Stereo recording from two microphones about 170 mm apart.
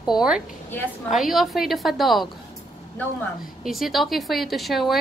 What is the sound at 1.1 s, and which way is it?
A woman's voice, centre (ahead or behind).